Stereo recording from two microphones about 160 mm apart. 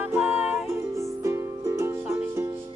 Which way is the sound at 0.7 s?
15° right (ahead or behind).